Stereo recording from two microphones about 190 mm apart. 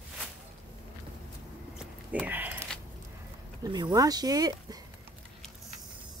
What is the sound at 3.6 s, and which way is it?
Speech, 20° right (ahead or behind).